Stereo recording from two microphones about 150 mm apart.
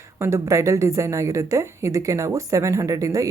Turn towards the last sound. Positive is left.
turn(degrees=-20)  # may be behind; listen again after turning